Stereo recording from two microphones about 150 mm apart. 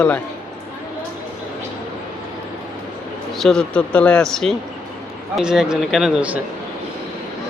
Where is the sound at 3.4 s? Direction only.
5° left (ahead or behind).